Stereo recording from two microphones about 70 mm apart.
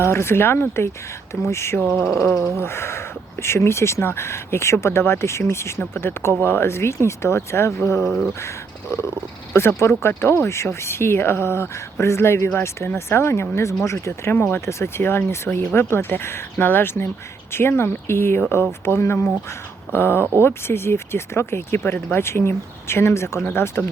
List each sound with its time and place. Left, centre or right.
0.0 s speech: left
8.0 s speech: centre
8.9 s speech: left
14.3 s speech: left